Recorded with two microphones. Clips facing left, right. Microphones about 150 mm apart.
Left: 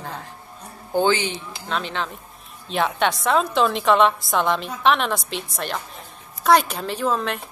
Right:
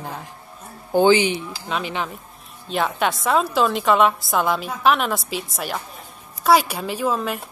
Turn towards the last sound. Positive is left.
turn(degrees=-5)  # may be behind; listen again after turning